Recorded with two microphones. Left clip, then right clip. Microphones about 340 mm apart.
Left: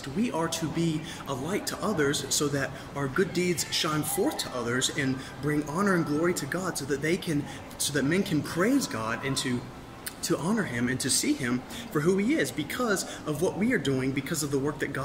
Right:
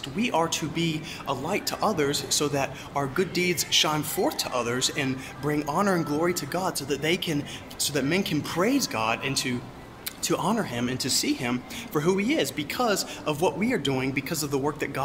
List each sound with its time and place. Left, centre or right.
0.2 s speech: centre